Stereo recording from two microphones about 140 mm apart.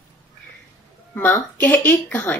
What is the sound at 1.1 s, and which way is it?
Speech, 15° left (ahead or behind).